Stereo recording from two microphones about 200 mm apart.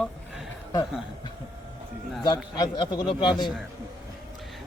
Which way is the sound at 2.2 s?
20° left (ahead or behind).